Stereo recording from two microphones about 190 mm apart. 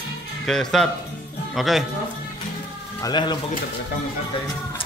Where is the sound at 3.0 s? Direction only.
20° left (ahead or behind).